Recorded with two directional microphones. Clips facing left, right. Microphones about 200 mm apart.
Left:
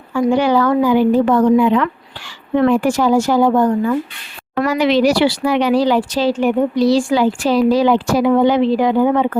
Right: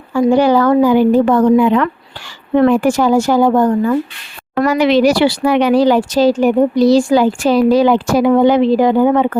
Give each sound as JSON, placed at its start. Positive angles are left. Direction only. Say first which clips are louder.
{"t": 0.1, "sound": "speech", "louder": "right 3 dB", "side_deg": -35}